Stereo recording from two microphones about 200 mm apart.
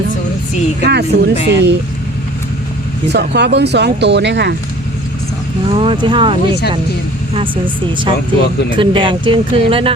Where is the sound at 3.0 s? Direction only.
60° right (ahead or behind).